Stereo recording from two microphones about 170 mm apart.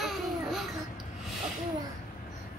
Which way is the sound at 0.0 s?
Centre (ahead or behind).